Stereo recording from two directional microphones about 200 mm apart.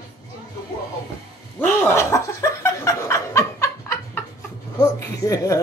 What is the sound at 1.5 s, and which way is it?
Chuckle, 10° left (ahead or behind).